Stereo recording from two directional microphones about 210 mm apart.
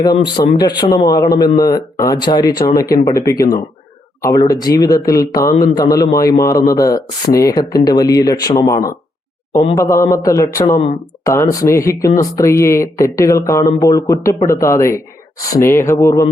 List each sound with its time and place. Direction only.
0.0 s speech: 20° left (ahead or behind)
10.8 s speech: 25° left (ahead or behind)
11.6 s speech: 15° left (ahead or behind)